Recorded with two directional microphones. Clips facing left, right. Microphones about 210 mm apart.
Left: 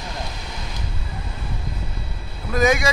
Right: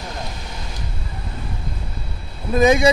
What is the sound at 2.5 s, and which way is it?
Speech, 30° right (ahead or behind).